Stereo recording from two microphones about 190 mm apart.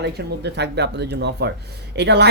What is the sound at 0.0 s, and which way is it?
Speech, 65° right (ahead or behind).